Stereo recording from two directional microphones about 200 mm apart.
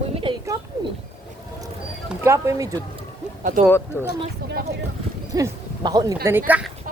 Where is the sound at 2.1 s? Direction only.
15° right (ahead or behind).